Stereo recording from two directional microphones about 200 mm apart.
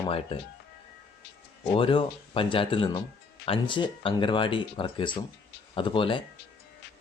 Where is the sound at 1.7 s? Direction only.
25° left (ahead or behind).